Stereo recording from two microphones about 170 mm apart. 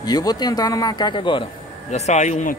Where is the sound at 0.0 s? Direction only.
25° left (ahead or behind).